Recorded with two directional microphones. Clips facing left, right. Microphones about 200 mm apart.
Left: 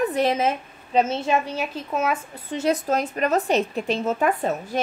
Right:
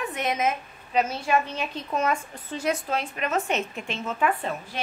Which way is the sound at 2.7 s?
40° left (ahead or behind).